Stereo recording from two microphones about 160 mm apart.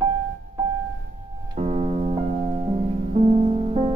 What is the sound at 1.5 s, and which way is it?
Music, 40° right (ahead or behind).